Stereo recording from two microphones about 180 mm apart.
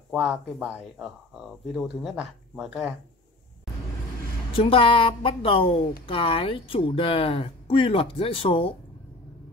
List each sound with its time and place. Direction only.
0.1 s speech: 5° right (ahead or behind)
4.6 s a woman's voice: 30° left (ahead or behind)